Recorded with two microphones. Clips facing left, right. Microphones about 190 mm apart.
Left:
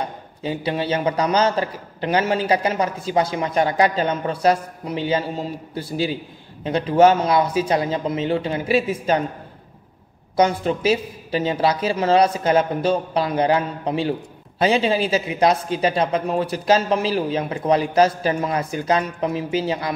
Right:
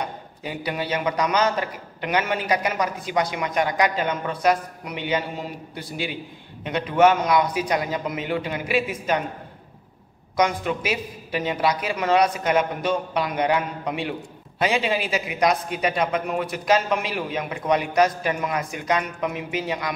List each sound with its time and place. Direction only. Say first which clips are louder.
0.0 s a man's voice: left 4 dB; 30° left (ahead or behind)
10.3 s a man's voice: left 4 dB; 30° left (ahead or behind)